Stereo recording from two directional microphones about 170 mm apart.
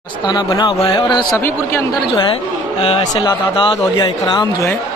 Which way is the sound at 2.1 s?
30° left (ahead or behind).